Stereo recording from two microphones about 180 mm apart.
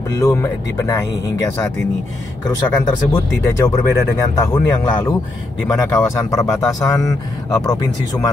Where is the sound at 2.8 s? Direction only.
20° left (ahead or behind).